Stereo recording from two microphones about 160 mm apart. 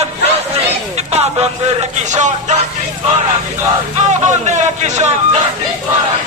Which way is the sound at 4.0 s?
50° right (ahead or behind).